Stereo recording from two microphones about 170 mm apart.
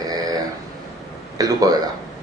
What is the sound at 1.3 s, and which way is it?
Speech, 20° right (ahead or behind).